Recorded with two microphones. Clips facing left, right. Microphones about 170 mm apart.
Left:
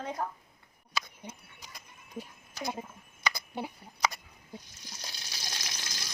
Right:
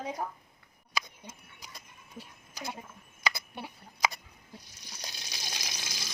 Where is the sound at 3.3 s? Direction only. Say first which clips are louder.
Left 5 dB; 20° left (ahead or behind).